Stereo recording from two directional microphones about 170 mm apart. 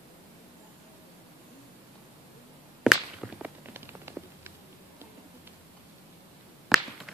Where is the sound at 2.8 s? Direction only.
5° right (ahead or behind).